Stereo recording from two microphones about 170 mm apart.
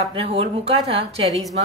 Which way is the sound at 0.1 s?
35° right (ahead or behind).